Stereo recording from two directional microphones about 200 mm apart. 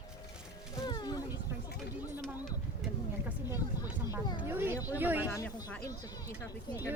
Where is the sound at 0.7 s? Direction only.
20° left (ahead or behind).